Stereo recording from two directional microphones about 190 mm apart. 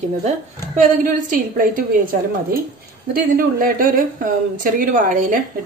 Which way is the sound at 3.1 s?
50° right (ahead or behind).